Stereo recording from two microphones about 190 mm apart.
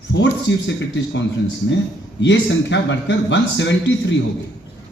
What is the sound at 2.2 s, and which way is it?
Speech, 70° left (ahead or behind).